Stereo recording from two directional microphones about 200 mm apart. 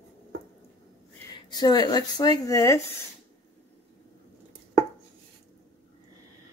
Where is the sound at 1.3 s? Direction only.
20° left (ahead or behind).